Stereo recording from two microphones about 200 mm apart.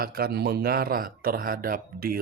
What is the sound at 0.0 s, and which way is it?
Speech, 50° right (ahead or behind).